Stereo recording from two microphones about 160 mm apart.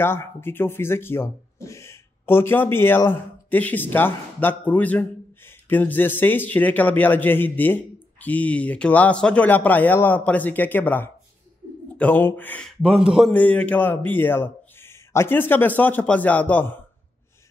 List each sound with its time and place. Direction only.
0.0 s speech: 15° left (ahead or behind)
12.8 s a man's voice: 5° right (ahead or behind)
13.3 s speech: 10° left (ahead or behind)